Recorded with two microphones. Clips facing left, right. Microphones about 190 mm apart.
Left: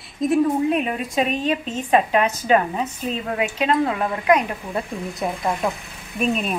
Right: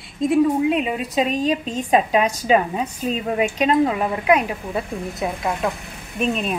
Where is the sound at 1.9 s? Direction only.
10° right (ahead or behind).